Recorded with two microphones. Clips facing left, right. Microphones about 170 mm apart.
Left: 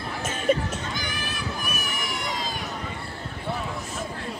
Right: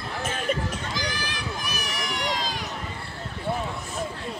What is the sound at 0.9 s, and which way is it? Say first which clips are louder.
Run: right 1 dB; 90° right.